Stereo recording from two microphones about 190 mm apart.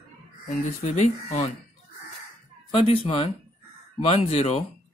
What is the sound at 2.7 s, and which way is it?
Speech, 30° left (ahead or behind).